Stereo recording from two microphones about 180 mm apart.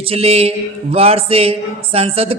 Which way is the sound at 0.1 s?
35° right (ahead or behind).